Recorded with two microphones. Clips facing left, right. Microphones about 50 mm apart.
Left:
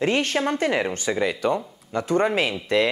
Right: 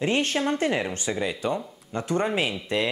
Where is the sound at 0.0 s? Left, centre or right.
Left.